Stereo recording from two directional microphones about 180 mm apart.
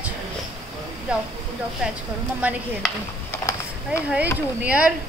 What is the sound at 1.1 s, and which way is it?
Speech, 5° right (ahead or behind).